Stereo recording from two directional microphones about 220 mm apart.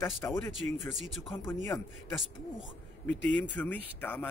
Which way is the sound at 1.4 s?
10° left (ahead or behind).